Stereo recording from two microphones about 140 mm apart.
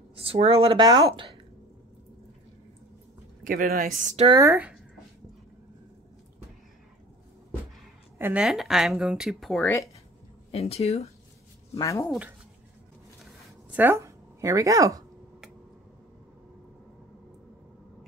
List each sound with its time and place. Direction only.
0.1 s speech: 45° right (ahead or behind)
3.4 s a woman's voice: 85° right
8.2 s a woman's voice: 10° right (ahead or behind)
10.5 s speech: 45° left (ahead or behind)
11.8 s speech: 20° left (ahead or behind)
13.7 s a woman's voice: 15° right (ahead or behind)